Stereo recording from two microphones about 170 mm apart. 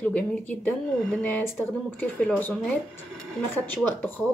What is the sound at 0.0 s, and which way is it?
Speech, 5° left (ahead or behind).